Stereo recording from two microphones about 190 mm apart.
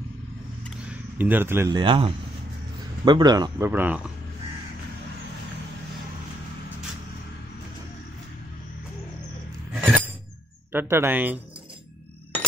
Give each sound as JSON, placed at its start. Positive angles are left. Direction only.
{"t": 0.8, "sound": "speech", "side_deg": -10}
{"t": 1.8, "sound": "speech", "side_deg": -25}
{"t": 9.8, "sound": "chink", "side_deg": -10}
{"t": 10.7, "sound": "speech", "side_deg": -10}